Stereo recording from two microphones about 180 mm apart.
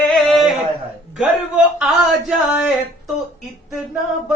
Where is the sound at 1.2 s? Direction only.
5° right (ahead or behind).